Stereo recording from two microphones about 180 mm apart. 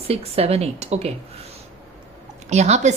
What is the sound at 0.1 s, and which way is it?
A woman's voice, 35° right (ahead or behind).